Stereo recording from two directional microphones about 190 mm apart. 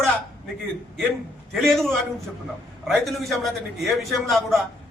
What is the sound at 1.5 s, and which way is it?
A man's voice, centre (ahead or behind).